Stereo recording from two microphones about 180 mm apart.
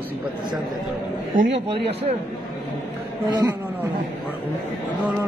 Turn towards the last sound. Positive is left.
turn(degrees=-20)  # may be behind; listen again after turning